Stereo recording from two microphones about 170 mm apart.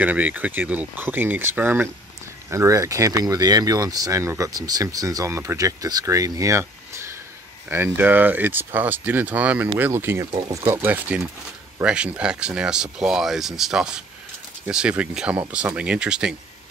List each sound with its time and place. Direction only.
0.0 s speech: 10° right (ahead or behind)